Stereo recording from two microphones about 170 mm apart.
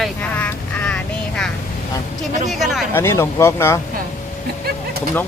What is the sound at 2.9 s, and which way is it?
Speech, 15° left (ahead or behind).